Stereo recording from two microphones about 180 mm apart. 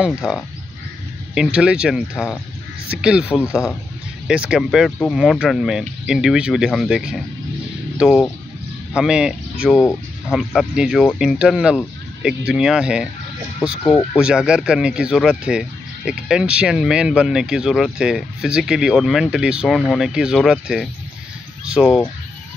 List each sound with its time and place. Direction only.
1.3 s speech: 5° right (ahead or behind)